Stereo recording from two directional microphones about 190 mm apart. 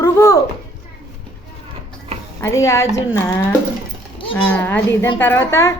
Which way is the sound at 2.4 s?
15° left (ahead or behind).